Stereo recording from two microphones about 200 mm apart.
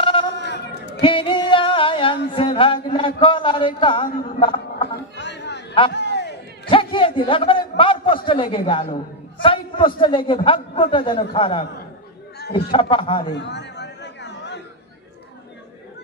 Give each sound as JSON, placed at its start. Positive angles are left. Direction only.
{"t": 0.0, "sound": "sheep", "side_deg": 25}
{"t": 0.3, "sound": "sheep", "side_deg": 60}
{"t": 1.0, "sound": "singing", "side_deg": 25}
{"t": 2.3, "sound": "a man's voice", "side_deg": 25}
{"t": 5.1, "sound": "chatter", "side_deg": 60}
{"t": 5.9, "sound": "a sound", "side_deg": 60}
{"t": 6.7, "sound": "a man's voice", "side_deg": 25}
{"t": 13.3, "sound": "chatter", "side_deg": 60}